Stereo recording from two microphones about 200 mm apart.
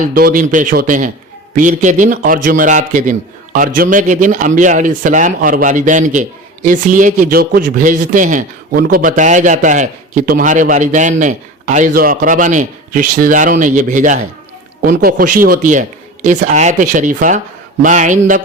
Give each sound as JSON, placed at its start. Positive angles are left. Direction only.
{"t": 0.1, "sound": "a man's voice", "side_deg": -45}